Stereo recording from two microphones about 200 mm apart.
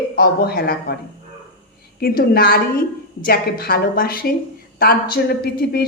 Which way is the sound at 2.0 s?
50° left (ahead or behind).